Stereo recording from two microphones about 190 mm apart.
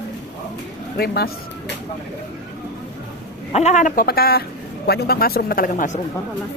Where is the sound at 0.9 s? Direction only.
55° left (ahead or behind).